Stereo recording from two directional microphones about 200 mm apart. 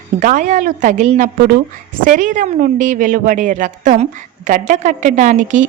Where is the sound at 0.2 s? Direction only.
40° right (ahead or behind).